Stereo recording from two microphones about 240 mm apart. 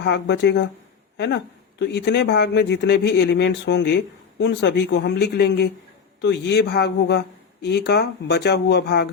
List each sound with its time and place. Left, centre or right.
0.0 s speech: left